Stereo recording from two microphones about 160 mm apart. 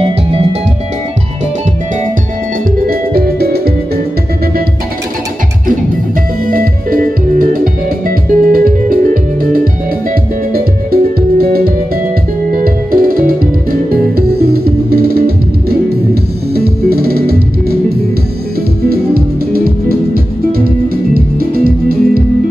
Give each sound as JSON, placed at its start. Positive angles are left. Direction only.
{"t": 2.9, "sound": "music", "side_deg": -70}
{"t": 6.4, "sound": "music", "side_deg": -65}